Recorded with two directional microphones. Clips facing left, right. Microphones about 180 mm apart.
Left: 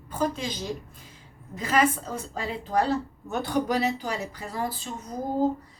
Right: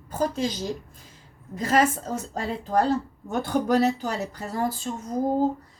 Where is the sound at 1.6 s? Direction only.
45° right (ahead or behind).